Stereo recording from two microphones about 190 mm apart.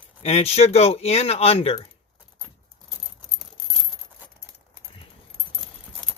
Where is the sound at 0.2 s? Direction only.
35° left (ahead or behind).